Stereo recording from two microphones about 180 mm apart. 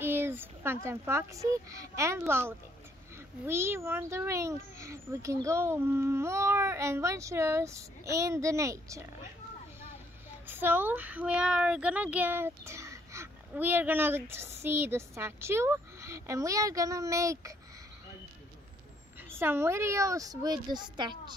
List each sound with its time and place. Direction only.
0.0 s a sound: 15° right (ahead or behind)
0.8 s speech: 15° right (ahead or behind)
10.4 s speech: 10° right (ahead or behind)
19.3 s speech: 15° right (ahead or behind)